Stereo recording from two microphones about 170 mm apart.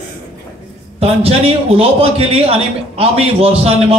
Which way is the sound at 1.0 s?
35° right (ahead or behind).